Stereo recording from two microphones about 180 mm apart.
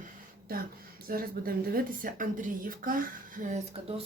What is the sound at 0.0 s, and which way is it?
Speech, 55° right (ahead or behind).